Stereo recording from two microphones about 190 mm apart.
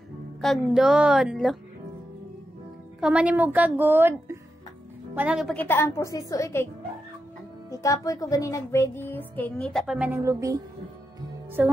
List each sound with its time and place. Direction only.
0.4 s a woman's voice: centre (ahead or behind)
3.0 s a woman's voice: 5° right (ahead or behind)
5.6 s music: 10° left (ahead or behind)
7.7 s music: 15° left (ahead or behind); by 10.6 s 15° right (ahead or behind)
11.6 s a woman's voice: 10° right (ahead or behind)